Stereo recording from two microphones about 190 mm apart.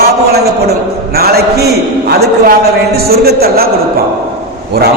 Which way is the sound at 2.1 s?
55° right (ahead or behind).